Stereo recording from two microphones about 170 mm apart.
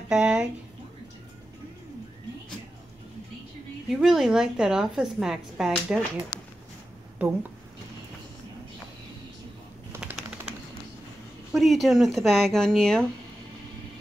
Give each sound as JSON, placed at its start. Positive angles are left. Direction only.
{"t": 0.1, "sound": "a sound", "side_deg": -5}
{"t": 3.9, "sound": "speech", "side_deg": 0}
{"t": 6.3, "sound": "a sound", "side_deg": 25}
{"t": 7.2, "sound": "speech", "side_deg": -10}
{"t": 9.9, "sound": "typewriter", "side_deg": -5}
{"t": 11.5, "sound": "speech", "side_deg": 0}